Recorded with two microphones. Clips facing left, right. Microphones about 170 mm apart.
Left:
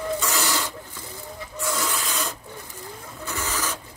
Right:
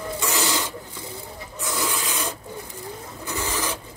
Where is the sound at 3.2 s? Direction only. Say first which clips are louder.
Right 2 dB; 15° right (ahead or behind).